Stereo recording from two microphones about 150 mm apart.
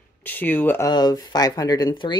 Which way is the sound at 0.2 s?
10° left (ahead or behind).